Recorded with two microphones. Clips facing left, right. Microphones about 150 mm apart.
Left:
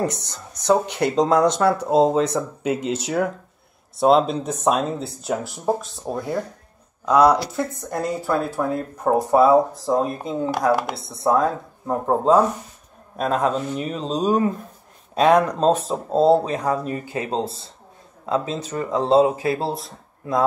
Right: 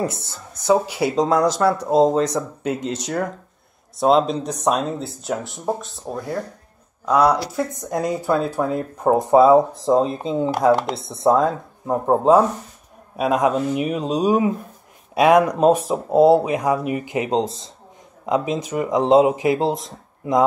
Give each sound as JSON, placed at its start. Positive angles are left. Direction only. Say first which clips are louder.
{"t": 0.0, "sound": "speech", "louder": "even", "side_deg": -5}
{"t": 7.5, "sound": "speech", "louder": "right 2 dB", "side_deg": -15}